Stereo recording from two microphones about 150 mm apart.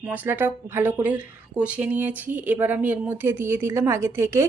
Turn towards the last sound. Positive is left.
turn(degrees=-15)  # may be behind; listen again after turning